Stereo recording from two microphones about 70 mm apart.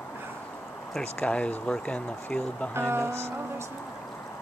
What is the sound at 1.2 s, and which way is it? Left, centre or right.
Speech, centre.